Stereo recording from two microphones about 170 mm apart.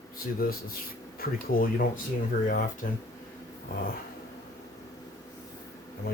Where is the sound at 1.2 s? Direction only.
60° left (ahead or behind).